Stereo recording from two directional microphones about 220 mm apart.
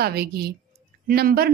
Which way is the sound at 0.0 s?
45° right (ahead or behind).